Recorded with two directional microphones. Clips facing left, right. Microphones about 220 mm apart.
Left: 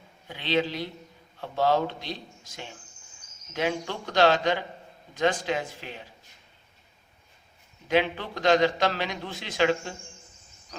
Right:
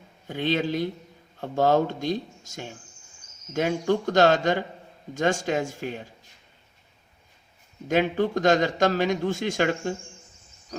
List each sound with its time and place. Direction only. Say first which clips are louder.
0.3 s speech: right 2 dB; 45° right (ahead or behind)
7.9 s speech: right 3 dB; 45° right (ahead or behind)